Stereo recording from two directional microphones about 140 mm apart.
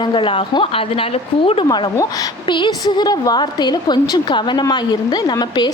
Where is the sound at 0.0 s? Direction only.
35° left (ahead or behind).